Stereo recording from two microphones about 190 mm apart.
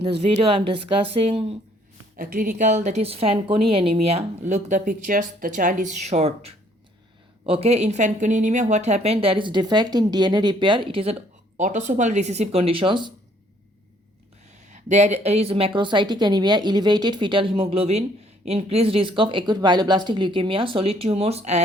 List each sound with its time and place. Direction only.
0.0 s speech: 30° right (ahead or behind)
2.1 s speech: 45° right (ahead or behind); by 13.1 s 25° right (ahead or behind)
14.7 s a woman's voice: 40° right (ahead or behind)